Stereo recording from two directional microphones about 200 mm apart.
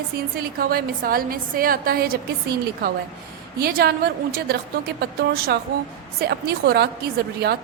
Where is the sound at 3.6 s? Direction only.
50° right (ahead or behind).